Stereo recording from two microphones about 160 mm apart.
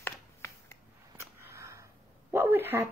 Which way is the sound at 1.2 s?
15° right (ahead or behind).